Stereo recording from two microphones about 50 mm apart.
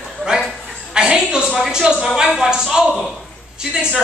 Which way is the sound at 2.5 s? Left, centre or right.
Centre.